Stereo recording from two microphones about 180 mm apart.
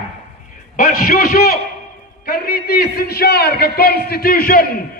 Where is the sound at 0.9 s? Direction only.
55° left (ahead or behind).